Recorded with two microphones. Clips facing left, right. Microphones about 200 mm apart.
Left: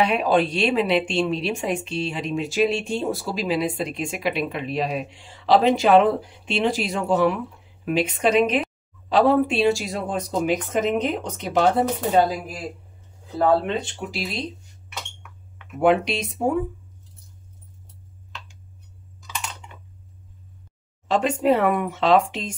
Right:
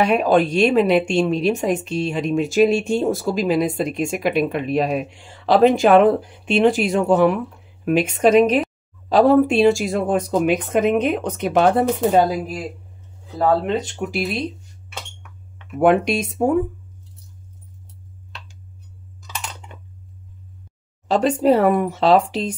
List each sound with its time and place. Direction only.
0.0 s a woman's voice: 45° right (ahead or behind)
13.4 s a woman's voice: 40° right (ahead or behind)
15.8 s a woman's voice: 50° right (ahead or behind)
21.1 s speech: 35° right (ahead or behind)